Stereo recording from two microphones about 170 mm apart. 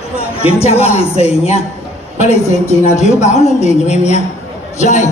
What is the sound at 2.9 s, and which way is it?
A man's voice, 40° left (ahead or behind).